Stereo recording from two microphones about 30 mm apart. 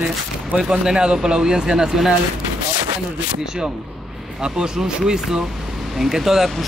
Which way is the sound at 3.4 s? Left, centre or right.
Right.